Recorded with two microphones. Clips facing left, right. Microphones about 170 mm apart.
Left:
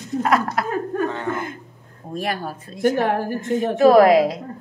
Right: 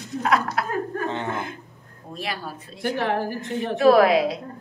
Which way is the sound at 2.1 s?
50° left (ahead or behind).